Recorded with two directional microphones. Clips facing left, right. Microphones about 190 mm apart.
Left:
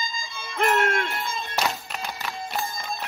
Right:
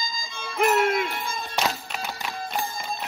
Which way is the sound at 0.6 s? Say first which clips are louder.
Right 2 dB; 5° right (ahead or behind).